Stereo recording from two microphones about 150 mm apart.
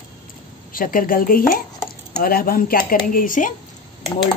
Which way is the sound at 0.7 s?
70° left (ahead or behind).